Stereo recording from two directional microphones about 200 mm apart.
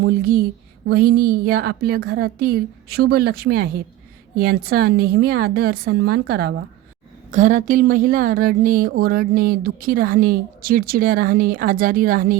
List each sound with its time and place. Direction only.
0.0 s speech: 50° right (ahead or behind)
7.3 s speech: 40° right (ahead or behind)